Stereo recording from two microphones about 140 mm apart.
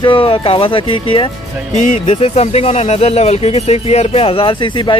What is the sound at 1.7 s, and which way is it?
Speech, 60° left (ahead or behind).